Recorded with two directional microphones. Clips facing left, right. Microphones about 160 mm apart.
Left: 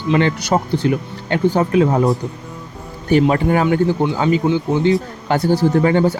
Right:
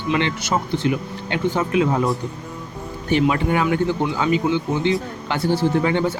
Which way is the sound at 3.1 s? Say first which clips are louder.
Left 4 dB; 40° left (ahead or behind).